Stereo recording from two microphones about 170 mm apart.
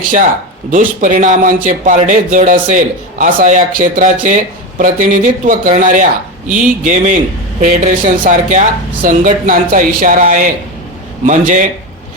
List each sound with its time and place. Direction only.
0.7 s a man's voice: 50° right (ahead or behind)